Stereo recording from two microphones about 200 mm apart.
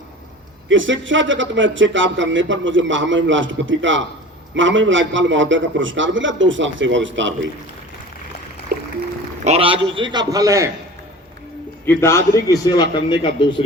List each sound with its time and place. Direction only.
0.7 s speech: 70° right (ahead or behind)
9.4 s a man's voice: 30° right (ahead or behind)
11.9 s a man's voice: 15° left (ahead or behind)